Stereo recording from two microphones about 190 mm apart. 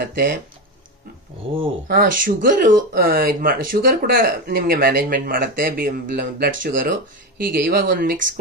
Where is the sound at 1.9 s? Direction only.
45° right (ahead or behind).